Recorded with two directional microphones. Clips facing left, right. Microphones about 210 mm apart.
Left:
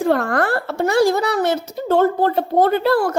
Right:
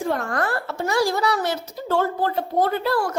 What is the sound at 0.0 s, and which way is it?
A woman's voice, 65° left (ahead or behind).